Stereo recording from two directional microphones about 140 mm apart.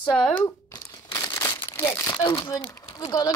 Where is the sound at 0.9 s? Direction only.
30° left (ahead or behind).